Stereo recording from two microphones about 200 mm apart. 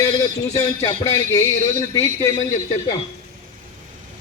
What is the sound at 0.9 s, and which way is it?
A man's voice, 15° left (ahead or behind).